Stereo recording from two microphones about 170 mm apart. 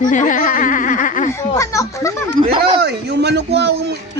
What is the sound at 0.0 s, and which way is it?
Speech, 50° left (ahead or behind).